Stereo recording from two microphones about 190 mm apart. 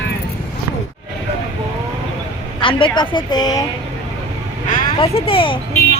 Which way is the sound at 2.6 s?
25° left (ahead or behind).